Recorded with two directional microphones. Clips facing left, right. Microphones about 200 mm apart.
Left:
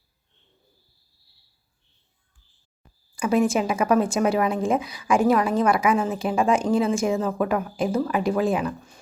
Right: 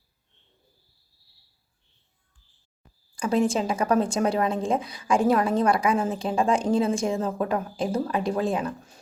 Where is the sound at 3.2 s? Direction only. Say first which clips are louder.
Left 2 dB; 5° left (ahead or behind).